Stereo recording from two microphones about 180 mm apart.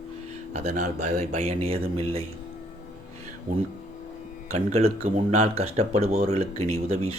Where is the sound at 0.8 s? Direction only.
40° right (ahead or behind).